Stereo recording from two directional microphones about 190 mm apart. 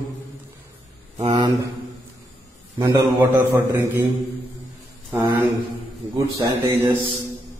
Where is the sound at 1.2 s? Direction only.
30° right (ahead or behind).